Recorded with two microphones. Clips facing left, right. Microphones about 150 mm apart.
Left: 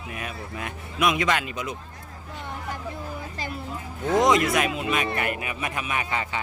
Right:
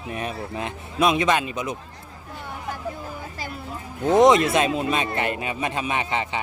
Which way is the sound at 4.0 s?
20° right (ahead or behind).